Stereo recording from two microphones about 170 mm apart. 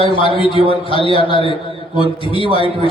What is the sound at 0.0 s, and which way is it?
A man's voice, 30° left (ahead or behind).